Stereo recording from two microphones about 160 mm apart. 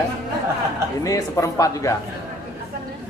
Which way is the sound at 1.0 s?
20° left (ahead or behind).